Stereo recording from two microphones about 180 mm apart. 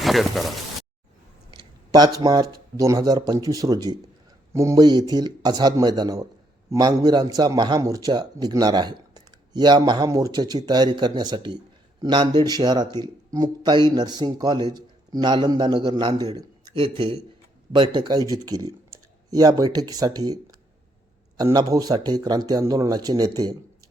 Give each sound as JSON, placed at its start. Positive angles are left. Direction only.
{"t": 0.0, "sound": "speech", "side_deg": 0}
{"t": 1.5, "sound": "a sound", "side_deg": -20}
{"t": 2.2, "sound": "speech", "side_deg": -20}